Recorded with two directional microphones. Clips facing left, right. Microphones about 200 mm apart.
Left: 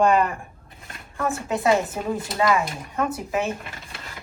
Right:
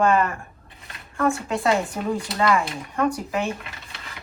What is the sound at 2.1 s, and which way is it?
Speech, 15° left (ahead or behind).